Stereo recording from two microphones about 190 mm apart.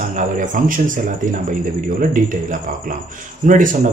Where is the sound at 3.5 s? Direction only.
45° right (ahead or behind).